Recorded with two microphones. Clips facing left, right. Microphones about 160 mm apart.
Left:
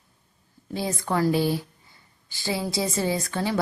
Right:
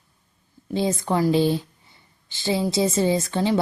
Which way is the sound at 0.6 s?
20° right (ahead or behind).